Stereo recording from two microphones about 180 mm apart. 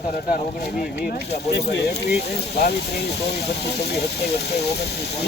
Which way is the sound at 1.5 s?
65° left (ahead or behind).